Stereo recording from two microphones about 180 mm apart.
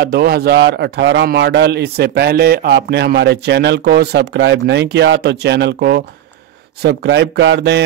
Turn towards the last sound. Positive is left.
turn(degrees=-70)  # may be behind; listen again after turning